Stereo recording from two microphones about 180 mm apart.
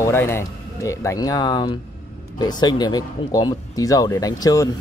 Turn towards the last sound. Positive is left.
turn(degrees=20)  # may be behind; listen again after turning